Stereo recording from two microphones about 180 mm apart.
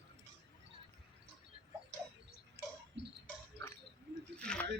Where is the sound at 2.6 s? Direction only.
35° left (ahead or behind).